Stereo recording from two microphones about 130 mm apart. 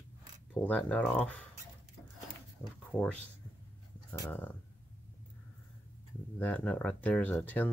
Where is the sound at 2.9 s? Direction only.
10° left (ahead or behind).